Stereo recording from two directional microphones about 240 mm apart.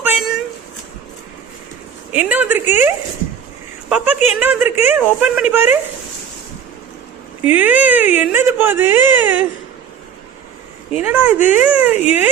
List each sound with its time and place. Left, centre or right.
0.0 s a sound: centre
2.1 s speech: centre
7.4 s speech: centre
10.9 s speech: centre
11.3 s speech: left
11.6 s speech: centre